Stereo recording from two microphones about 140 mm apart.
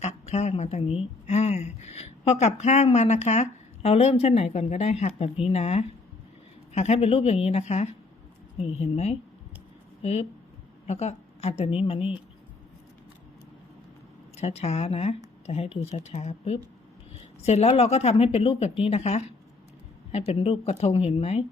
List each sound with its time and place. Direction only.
0.0 s a woman's voice: 55° left (ahead or behind)
14.3 s a woman's voice: 50° left (ahead or behind)